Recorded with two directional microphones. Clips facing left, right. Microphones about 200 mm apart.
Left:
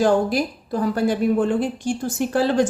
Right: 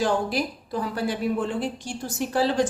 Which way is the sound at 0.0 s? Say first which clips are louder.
Left 6 dB; 45° left (ahead or behind).